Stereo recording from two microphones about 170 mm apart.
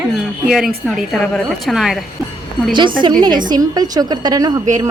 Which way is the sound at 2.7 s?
30° right (ahead or behind).